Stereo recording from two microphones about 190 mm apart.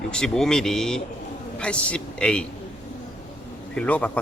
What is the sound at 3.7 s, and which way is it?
Speech, 5° left (ahead or behind).